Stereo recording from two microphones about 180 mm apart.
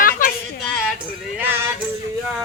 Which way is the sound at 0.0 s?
50° left (ahead or behind).